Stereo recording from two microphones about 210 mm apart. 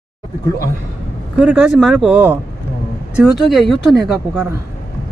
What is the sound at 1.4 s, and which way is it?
Speech, 5° right (ahead or behind).